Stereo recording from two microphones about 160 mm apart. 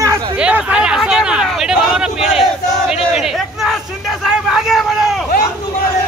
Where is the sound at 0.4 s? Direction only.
10° right (ahead or behind).